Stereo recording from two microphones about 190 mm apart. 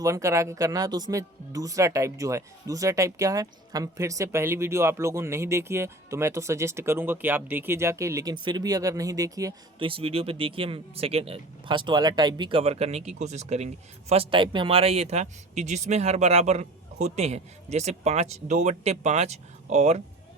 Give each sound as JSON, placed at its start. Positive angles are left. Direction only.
{"t": 0.0, "sound": "speech", "side_deg": -15}